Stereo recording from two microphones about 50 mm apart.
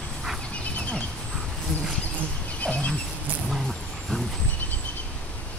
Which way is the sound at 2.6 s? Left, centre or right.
Left.